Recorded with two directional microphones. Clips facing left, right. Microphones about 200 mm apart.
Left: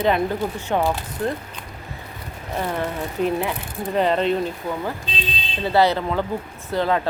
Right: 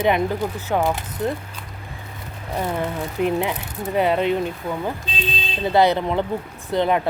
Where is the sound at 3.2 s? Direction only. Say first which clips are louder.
Right 1 dB; 15° right (ahead or behind).